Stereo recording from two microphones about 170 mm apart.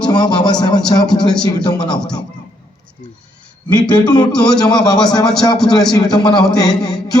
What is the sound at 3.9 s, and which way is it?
Speech, 25° left (ahead or behind).